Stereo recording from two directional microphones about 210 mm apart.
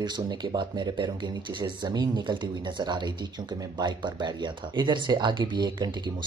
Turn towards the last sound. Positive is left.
turn(degrees=-20)  # may be behind; listen again after turning